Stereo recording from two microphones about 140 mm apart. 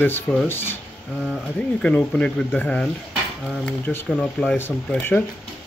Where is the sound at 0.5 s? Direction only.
15° left (ahead or behind).